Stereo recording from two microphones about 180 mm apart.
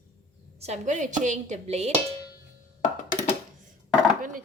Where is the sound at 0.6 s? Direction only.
40° right (ahead or behind).